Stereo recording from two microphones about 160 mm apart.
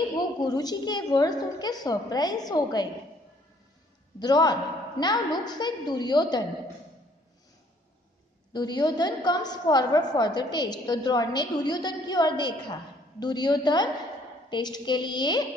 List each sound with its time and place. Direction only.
0.4 s a woman's voice: 25° left (ahead or behind)
4.2 s a woman's voice: 25° left (ahead or behind)
8.5 s a woman's voice: 25° left (ahead or behind)